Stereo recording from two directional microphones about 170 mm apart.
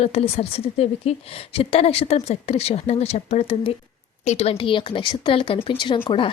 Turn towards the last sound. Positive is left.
turn(degrees=30)  # may be behind; listen again after turning